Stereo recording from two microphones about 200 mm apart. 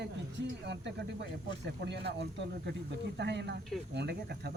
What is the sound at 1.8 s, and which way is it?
Speech, 55° right (ahead or behind).